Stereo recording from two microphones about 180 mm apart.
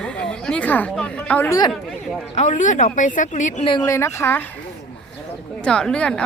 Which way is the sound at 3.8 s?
15° left (ahead or behind).